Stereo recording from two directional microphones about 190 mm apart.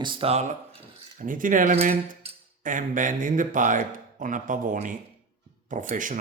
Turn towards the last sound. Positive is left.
turn(degrees=-45)  # may be behind; listen again after turning